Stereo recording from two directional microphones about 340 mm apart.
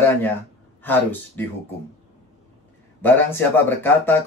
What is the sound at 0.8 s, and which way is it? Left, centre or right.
Speech, centre.